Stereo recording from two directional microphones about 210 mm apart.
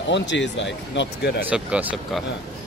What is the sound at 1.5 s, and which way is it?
Speech, 5° right (ahead or behind).